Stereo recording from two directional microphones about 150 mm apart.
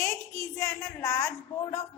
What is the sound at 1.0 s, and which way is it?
Speech, 20° left (ahead or behind).